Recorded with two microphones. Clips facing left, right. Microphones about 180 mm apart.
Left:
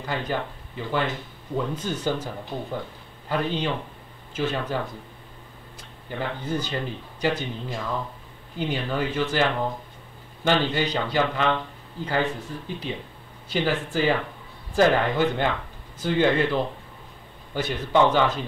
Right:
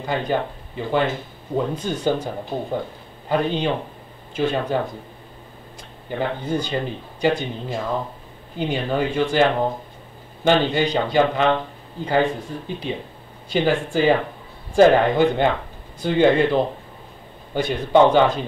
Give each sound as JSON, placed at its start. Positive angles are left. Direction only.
{"t": 0.0, "sound": "a man's voice", "side_deg": -20}
{"t": 6.0, "sound": "speech", "side_deg": -20}
{"t": 18.0, "sound": "speech", "side_deg": -20}